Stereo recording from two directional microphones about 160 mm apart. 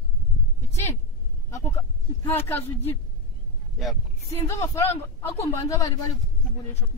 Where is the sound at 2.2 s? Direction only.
15° left (ahead or behind).